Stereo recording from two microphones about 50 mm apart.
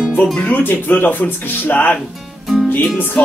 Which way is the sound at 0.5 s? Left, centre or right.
Left.